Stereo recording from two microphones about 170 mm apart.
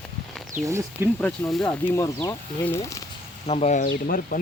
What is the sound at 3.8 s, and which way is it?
Speech, 60° left (ahead or behind).